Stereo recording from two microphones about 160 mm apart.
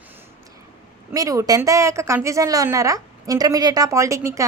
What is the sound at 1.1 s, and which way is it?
A woman's voice, 20° right (ahead or behind).